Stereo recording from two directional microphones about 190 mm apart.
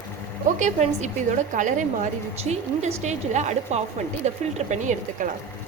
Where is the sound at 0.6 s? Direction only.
40° right (ahead or behind).